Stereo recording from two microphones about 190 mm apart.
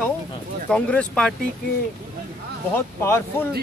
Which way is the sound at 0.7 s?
5° left (ahead or behind).